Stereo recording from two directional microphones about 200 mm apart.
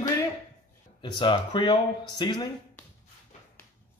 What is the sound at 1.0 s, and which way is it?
Speech, 20° left (ahead or behind).